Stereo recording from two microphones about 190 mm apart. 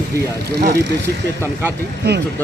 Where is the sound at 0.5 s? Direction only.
55° right (ahead or behind).